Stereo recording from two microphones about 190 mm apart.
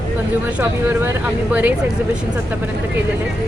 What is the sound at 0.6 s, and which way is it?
Speech, 10° right (ahead or behind).